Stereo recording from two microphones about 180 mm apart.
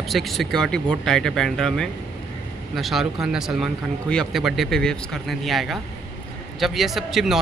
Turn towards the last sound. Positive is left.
turn(degrees=0)  # may be behind; listen again after turning